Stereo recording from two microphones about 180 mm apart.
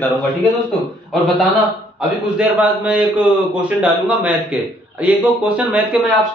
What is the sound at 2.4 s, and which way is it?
A man's voice, 10° right (ahead or behind).